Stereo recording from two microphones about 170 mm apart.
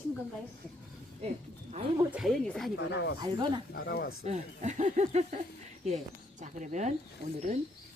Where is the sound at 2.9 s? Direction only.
80° left.